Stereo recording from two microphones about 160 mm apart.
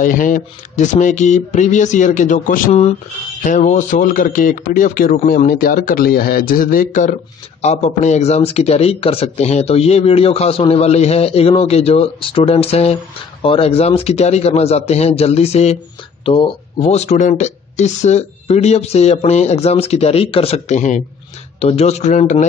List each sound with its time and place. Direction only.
0.0 s speech: 55° left (ahead or behind)
7.6 s speech: 45° left (ahead or behind)